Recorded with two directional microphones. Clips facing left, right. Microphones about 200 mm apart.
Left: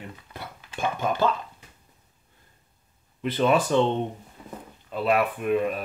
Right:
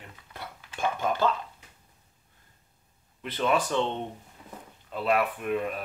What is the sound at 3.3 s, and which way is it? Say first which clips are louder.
Speech: left 4 dB; 30° left (ahead or behind).